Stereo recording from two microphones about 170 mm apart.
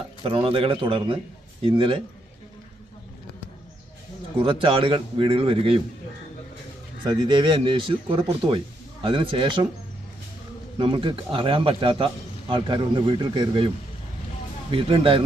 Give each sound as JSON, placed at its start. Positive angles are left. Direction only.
{"t": 0.2, "sound": "a man's voice", "side_deg": -35}
{"t": 4.4, "sound": "a man's voice", "side_deg": -30}
{"t": 7.0, "sound": "speech", "side_deg": -25}
{"t": 10.8, "sound": "a man's voice", "side_deg": -30}
{"t": 14.7, "sound": "a man's voice", "side_deg": -30}